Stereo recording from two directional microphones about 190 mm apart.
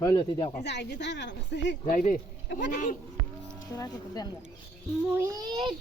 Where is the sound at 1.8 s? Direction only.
45° left (ahead or behind).